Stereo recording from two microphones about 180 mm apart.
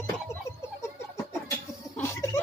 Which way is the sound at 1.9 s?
15° left (ahead or behind).